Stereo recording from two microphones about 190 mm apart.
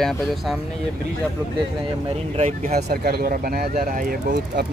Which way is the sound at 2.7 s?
55° right (ahead or behind).